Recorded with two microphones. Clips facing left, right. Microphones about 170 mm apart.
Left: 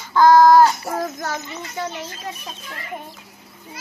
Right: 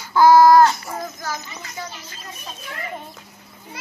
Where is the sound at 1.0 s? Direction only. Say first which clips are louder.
Left 3 dB; 65° left (ahead or behind).